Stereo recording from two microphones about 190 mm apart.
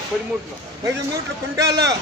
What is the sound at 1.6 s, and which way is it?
Speech, 20° right (ahead or behind).